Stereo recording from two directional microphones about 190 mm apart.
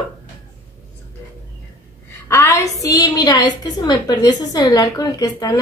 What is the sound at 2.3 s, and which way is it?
A woman's voice, 15° left (ahead or behind).